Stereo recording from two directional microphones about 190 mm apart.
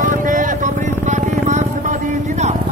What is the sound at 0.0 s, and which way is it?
Vehicle, 45° right (ahead or behind).